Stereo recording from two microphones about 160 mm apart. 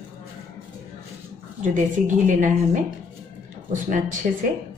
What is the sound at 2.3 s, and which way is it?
A woman's voice, 50° right (ahead or behind).